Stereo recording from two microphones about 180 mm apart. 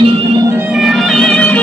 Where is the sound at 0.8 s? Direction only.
Centre (ahead or behind).